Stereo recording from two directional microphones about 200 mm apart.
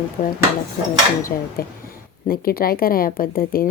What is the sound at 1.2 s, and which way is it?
Speech, 45° left (ahead or behind).